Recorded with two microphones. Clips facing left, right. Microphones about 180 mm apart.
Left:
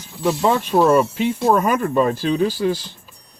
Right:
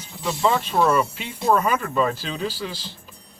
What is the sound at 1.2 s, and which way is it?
Speech, 45° left (ahead or behind).